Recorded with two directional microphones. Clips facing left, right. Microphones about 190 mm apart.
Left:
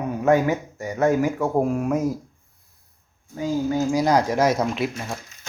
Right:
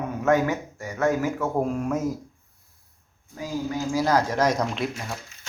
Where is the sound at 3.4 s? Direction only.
25° left (ahead or behind); by 4.8 s 5° left (ahead or behind).